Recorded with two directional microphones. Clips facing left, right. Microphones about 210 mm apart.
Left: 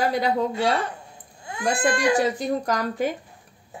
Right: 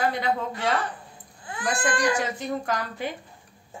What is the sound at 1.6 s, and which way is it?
Speech, 25° left (ahead or behind).